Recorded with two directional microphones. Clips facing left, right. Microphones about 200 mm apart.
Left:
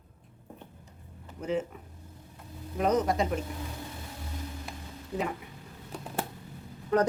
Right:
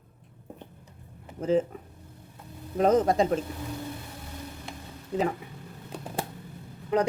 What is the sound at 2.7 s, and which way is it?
Speech, 25° right (ahead or behind).